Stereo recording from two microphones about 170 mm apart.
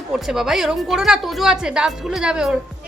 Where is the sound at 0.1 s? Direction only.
5° right (ahead or behind).